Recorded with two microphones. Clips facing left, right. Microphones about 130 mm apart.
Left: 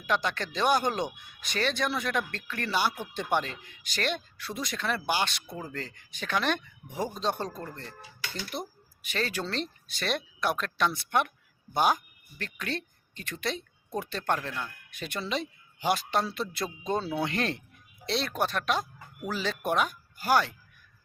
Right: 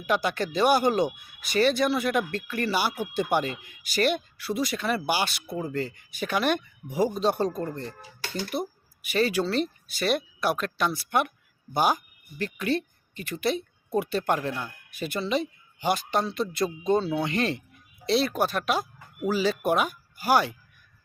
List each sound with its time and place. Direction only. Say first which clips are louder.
0.0 s speech: right 4 dB; 5° right (ahead or behind)
8.2 s speech: right 6 dB; 40° right (ahead or behind)
8.5 s speech: right 6 dB; 10° right (ahead or behind)